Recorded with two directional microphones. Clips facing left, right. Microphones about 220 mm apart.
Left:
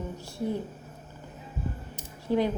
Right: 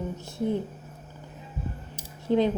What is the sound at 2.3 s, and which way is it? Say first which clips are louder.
Speech: right 3 dB; 20° right (ahead or behind).